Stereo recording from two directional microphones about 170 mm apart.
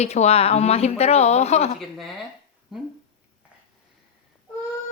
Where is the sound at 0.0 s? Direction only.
40° left (ahead or behind).